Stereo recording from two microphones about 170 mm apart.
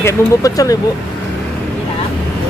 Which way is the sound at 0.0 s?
20° left (ahead or behind).